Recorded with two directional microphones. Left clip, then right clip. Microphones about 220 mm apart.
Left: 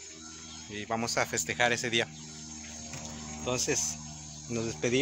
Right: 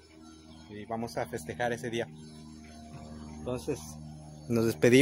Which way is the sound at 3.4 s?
20° right (ahead or behind).